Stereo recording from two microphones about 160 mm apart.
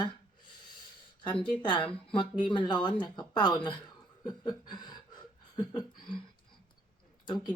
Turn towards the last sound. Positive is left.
turn(degrees=25)  # may be behind; listen again after turning